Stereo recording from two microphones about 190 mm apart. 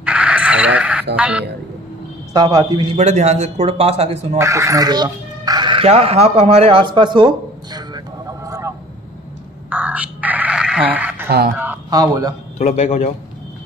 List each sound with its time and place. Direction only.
0.0 s a sound: 5° right (ahead or behind)
1.1 s speech: 5° right (ahead or behind)
2.3 s a man's voice: 20° right (ahead or behind)
3.0 s speech: 35° right (ahead or behind)
4.4 s crow: 15° right (ahead or behind)
11.2 s speech: 60° right (ahead or behind)
11.5 s speech: 10° right (ahead or behind)
12.5 s speech: 35° left (ahead or behind)